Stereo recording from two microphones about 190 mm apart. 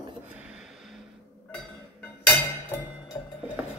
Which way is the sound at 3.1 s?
20° left (ahead or behind).